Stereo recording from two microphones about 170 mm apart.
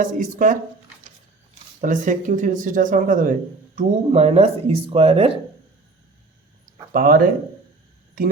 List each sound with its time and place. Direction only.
0.0 s speech: 50° right (ahead or behind)
1.8 s speech: 50° right (ahead or behind)
3.8 s speech: 40° right (ahead or behind)
6.9 s speech: 60° right (ahead or behind)